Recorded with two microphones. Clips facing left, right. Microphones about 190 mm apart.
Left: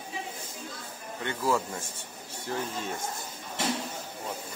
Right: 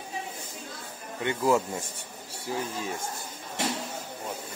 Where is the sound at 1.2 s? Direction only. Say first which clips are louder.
Right 4 dB; 15° right (ahead or behind).